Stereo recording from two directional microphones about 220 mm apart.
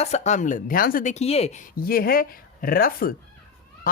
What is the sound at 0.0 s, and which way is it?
Speech, 30° left (ahead or behind).